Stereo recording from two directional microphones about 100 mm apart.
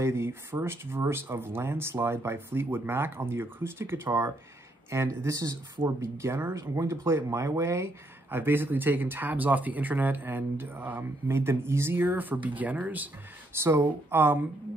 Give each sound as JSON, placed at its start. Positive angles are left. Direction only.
{"t": 0.0, "sound": "speech", "side_deg": -25}